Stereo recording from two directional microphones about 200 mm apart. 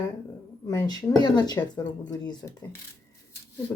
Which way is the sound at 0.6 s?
20° left (ahead or behind).